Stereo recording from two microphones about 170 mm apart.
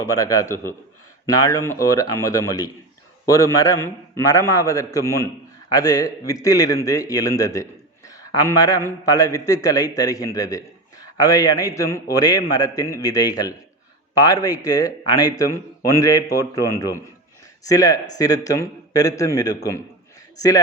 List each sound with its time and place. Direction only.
0.0 s a man's voice: 20° left (ahead or behind)